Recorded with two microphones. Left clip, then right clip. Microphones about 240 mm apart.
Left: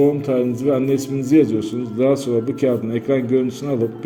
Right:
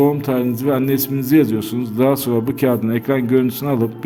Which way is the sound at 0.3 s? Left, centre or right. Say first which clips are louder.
Even; right.